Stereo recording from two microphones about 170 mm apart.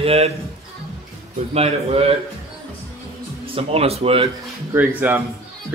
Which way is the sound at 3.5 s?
35° right (ahead or behind).